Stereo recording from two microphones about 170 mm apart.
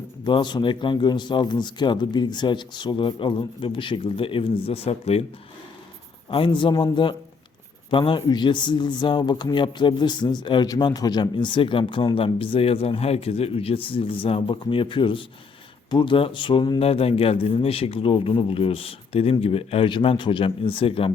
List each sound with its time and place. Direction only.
0.3 s speech: 25° left (ahead or behind)
6.3 s speech: 30° left (ahead or behind)